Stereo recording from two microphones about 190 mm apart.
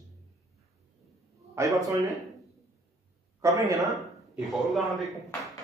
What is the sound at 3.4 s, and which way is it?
Speech, 20° right (ahead or behind).